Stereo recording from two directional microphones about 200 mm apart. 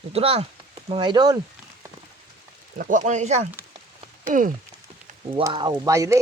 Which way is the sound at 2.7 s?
40° right (ahead or behind).